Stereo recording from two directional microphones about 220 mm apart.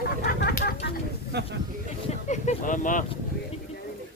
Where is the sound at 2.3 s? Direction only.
35° left (ahead or behind).